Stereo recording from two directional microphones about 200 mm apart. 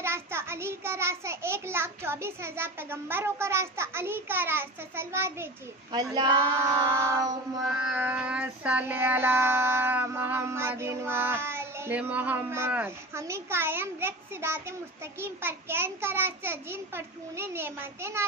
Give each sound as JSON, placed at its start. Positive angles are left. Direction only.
{"t": 0.0, "sound": "child singing", "side_deg": -10}
{"t": 7.6, "sound": "child singing", "side_deg": -5}